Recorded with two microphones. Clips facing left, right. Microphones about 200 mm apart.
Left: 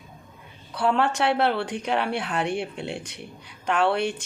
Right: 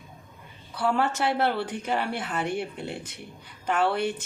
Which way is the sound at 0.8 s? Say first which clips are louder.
Left 2 dB; 65° left (ahead or behind).